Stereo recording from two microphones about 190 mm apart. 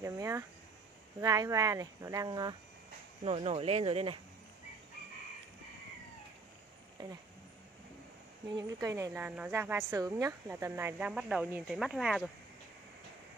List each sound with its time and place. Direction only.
0.0 s speech: 15° right (ahead or behind)
7.0 s speech: 25° right (ahead or behind)
8.5 s speech: 20° right (ahead or behind); by 12.3 s centre (ahead or behind)